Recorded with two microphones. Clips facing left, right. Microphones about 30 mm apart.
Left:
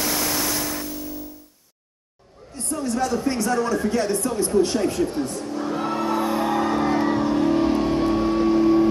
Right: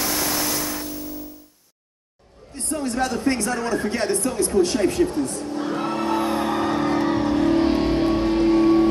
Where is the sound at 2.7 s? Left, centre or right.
Right.